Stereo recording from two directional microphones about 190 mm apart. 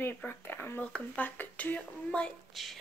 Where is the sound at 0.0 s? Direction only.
10° left (ahead or behind).